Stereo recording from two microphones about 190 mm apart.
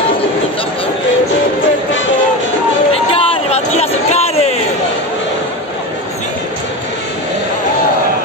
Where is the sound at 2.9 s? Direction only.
30° left (ahead or behind).